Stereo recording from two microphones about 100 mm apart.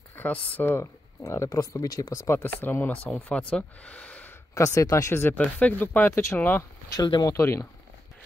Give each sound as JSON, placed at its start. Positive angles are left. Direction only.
{"t": 0.1, "sound": "speech", "side_deg": 15}
{"t": 0.6, "sound": "speech", "side_deg": 25}
{"t": 4.6, "sound": "speech", "side_deg": 35}
{"t": 5.4, "sound": "speech", "side_deg": 15}
{"t": 6.9, "sound": "speech", "side_deg": 40}
{"t": 7.3, "sound": "speech", "side_deg": 30}